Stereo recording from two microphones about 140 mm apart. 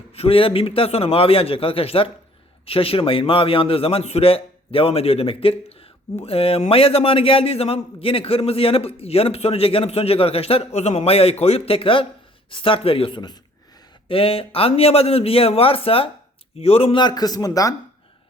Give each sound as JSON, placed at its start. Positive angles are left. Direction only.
{"t": 0.1, "sound": "a man's voice", "side_deg": 45}
{"t": 14.1, "sound": "a man's voice", "side_deg": 40}
{"t": 17.0, "sound": "speech", "side_deg": 30}